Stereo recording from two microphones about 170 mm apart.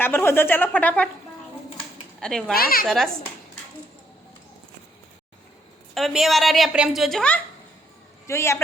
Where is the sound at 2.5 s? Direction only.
60° left (ahead or behind).